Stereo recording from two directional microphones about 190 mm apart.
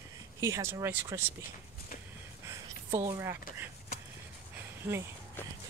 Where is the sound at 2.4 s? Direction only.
15° right (ahead or behind).